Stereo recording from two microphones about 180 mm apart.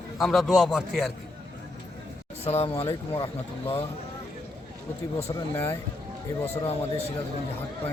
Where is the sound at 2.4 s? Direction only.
35° left (ahead or behind).